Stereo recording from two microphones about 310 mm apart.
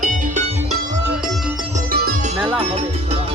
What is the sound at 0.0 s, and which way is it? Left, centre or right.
Music, right.